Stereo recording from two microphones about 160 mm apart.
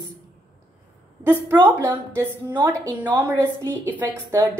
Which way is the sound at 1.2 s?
15° right (ahead or behind).